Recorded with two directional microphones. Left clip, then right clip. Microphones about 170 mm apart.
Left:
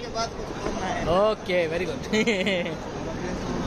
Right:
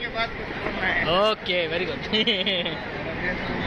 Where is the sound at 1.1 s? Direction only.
15° left (ahead or behind).